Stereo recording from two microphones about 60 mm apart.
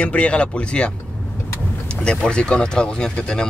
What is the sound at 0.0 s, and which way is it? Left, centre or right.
Speech, left.